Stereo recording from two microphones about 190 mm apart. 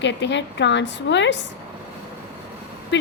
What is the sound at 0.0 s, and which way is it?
A woman's voice, 70° left (ahead or behind).